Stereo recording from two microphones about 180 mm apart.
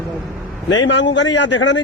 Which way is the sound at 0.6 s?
85° left.